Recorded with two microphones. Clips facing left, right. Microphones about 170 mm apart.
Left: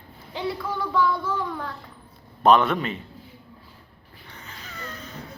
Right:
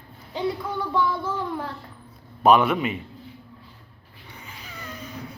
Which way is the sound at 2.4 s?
10° right (ahead or behind).